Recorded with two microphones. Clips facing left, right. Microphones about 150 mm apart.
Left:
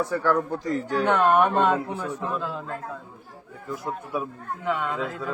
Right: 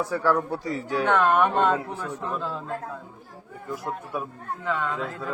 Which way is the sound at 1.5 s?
5° left (ahead or behind).